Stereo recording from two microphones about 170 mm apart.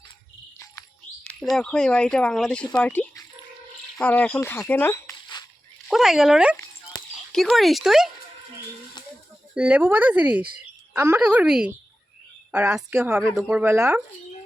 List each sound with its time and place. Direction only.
1.5 s speech: 5° left (ahead or behind); by 5.5 s 20° left (ahead or behind)
5.9 s speech: centre (ahead or behind)
6.9 s a sound: 20° left (ahead or behind)
7.3 s speech: centre (ahead or behind)
9.0 s a sound: 25° left (ahead or behind)
9.6 s a woman's voice: 5° right (ahead or behind)